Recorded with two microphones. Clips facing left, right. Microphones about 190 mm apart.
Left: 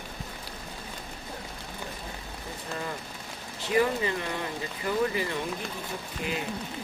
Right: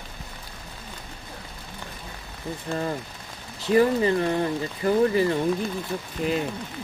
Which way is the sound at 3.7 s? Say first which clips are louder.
Right 6 dB; 40° right (ahead or behind).